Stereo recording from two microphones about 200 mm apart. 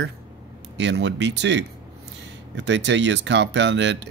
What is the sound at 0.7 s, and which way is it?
Speech, 65° right (ahead or behind).